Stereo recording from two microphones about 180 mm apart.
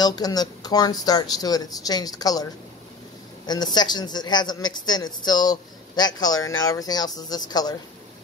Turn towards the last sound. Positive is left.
turn(degrees=20)  # may be behind; listen again after turning